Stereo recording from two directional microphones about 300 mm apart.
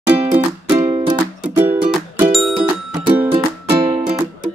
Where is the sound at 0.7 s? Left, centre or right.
Centre.